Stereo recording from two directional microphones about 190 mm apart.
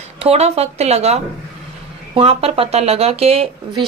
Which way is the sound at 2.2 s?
30° right (ahead or behind).